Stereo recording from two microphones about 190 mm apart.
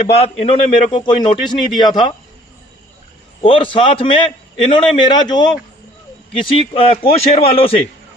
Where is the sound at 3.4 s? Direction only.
25° left (ahead or behind).